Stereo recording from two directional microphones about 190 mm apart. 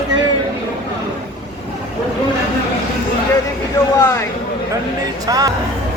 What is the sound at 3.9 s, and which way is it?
Speech, 20° left (ahead or behind).